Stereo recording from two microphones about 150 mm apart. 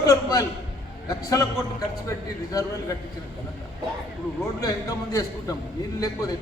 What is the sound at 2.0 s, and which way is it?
Speech, 20° left (ahead or behind).